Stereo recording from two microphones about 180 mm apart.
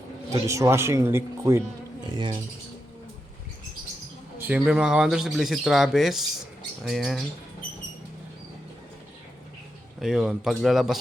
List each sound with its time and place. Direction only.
0.3 s a man's voice: 15° right (ahead or behind)
2.1 s mechanisms: 25° right (ahead or behind)
4.4 s speech: 5° right (ahead or behind)
10.0 s speech: 5° right (ahead or behind)